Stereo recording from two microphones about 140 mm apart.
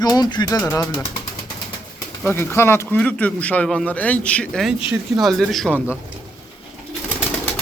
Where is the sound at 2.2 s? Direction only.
15° left (ahead or behind); by 5.7 s centre (ahead or behind).